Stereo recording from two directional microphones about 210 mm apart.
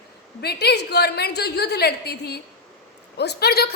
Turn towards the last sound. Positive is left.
turn(degrees=50)  # may be behind; listen again after turning